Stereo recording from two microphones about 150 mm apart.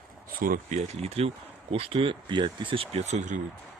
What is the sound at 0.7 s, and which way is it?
Speech, 45° right (ahead or behind).